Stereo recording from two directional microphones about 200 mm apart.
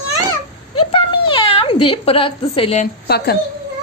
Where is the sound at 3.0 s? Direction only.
55° left (ahead or behind).